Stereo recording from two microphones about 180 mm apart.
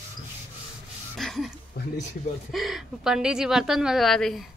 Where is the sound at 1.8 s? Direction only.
60° left (ahead or behind).